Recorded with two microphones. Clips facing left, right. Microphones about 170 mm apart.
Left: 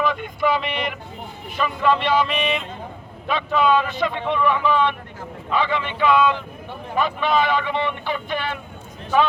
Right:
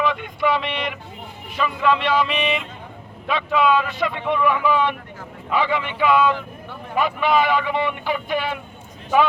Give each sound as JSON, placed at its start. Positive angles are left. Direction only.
{"t": 0.0, "sound": "vehicle", "side_deg": 0}
{"t": 1.5, "sound": "speech", "side_deg": 0}